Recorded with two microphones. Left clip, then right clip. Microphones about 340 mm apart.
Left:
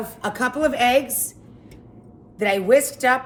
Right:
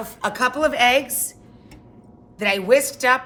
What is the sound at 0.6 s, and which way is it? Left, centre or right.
Speech, centre.